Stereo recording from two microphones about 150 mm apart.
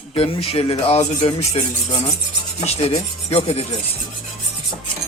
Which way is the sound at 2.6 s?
45° left (ahead or behind).